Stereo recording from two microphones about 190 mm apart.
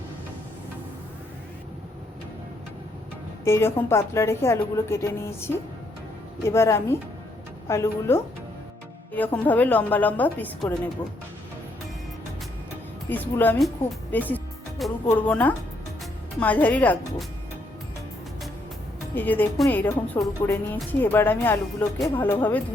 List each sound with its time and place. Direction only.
3.4 s a woman's voice: 15° left (ahead or behind)
13.1 s a woman's voice: 10° left (ahead or behind)
19.1 s a woman's voice: 10° left (ahead or behind)